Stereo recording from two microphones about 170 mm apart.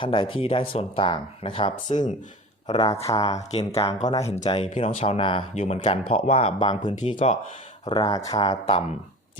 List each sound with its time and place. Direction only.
0.0 s speech: 30° left (ahead or behind)
3.3 s speech: 35° left (ahead or behind)
7.2 s speech: 40° left (ahead or behind)
8.0 s speech: 20° left (ahead or behind)